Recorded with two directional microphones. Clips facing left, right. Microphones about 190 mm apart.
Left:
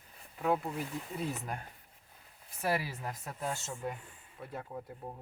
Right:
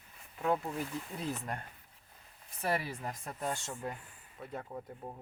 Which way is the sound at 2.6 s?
5° left (ahead or behind).